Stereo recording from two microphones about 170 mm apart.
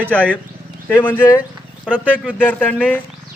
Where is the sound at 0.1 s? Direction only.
10° left (ahead or behind).